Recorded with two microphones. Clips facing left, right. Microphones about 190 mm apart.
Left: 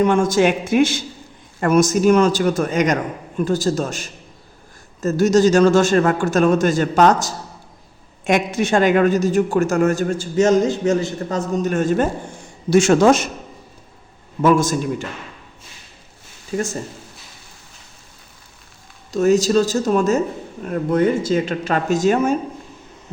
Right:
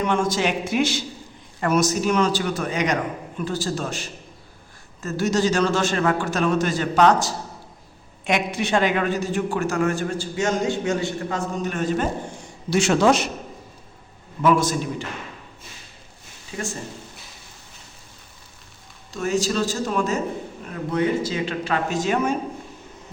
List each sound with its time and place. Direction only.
0.0 s a woman's voice: 50° left (ahead or behind)
14.4 s a woman's voice: 45° left (ahead or behind)
19.1 s a woman's voice: 40° left (ahead or behind)